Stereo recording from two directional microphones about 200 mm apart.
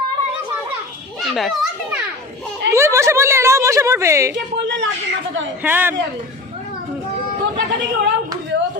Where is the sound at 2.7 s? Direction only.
15° right (ahead or behind).